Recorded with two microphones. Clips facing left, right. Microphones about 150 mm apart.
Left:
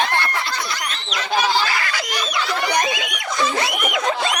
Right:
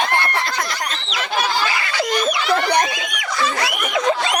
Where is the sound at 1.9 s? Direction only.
30° right (ahead or behind).